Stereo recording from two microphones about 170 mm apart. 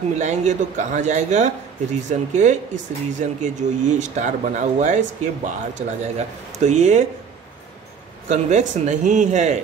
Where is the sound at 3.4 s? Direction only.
45° right (ahead or behind).